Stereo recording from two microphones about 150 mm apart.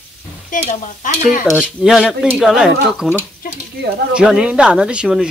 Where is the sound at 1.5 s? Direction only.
Centre (ahead or behind).